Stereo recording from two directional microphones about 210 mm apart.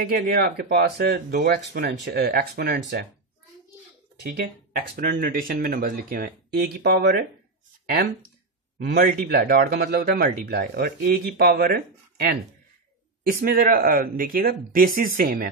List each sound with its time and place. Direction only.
0.2 s speech: 45° right (ahead or behind)
4.2 s speech: 45° right (ahead or behind)